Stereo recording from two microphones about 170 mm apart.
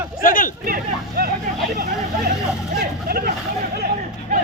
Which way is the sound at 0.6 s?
60° right (ahead or behind).